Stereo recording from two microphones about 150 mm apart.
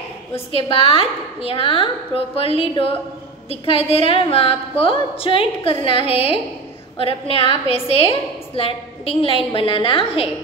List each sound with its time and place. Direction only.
0.5 s a woman's voice: 40° left (ahead or behind)